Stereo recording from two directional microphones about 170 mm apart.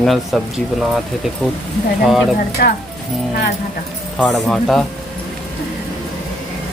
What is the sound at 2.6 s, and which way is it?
Speech, 75° left (ahead or behind).